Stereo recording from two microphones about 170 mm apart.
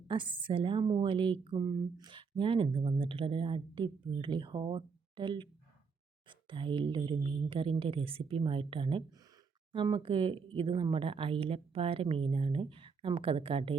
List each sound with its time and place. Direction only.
0.1 s a woman's voice: 30° right (ahead or behind)